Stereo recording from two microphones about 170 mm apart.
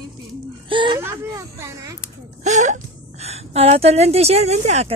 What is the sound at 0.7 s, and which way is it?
Speech, 30° right (ahead or behind).